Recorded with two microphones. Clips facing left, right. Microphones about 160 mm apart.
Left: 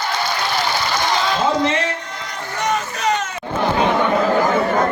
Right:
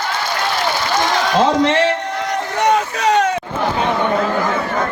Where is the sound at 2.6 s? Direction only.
70° right (ahead or behind).